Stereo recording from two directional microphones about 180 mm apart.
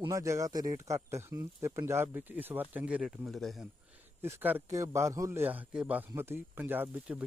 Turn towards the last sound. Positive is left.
turn(degrees=-5)  # may be behind; listen again after turning